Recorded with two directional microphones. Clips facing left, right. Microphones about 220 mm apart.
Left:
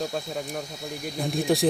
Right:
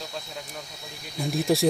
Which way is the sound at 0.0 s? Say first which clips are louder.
Left 8 dB; 50° left (ahead or behind).